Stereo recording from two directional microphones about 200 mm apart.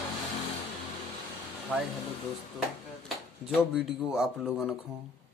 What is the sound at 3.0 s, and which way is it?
Speech, centre (ahead or behind).